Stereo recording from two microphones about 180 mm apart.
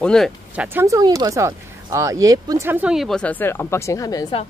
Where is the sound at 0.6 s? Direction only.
15° right (ahead or behind); by 4.3 s 20° left (ahead or behind).